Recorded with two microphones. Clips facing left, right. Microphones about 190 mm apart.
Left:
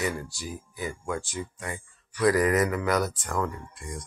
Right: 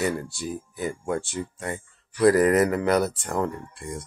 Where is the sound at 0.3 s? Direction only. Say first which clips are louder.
Right 6 dB; 25° right (ahead or behind).